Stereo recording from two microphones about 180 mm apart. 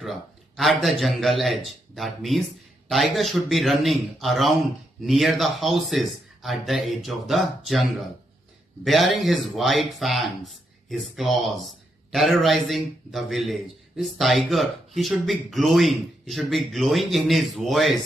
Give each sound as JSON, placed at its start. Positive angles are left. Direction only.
{"t": 0.0, "sound": "a man's voice", "side_deg": 0}
{"t": 8.8, "sound": "a man's voice", "side_deg": 0}